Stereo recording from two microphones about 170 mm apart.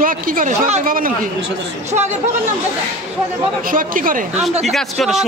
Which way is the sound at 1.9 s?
45° right (ahead or behind).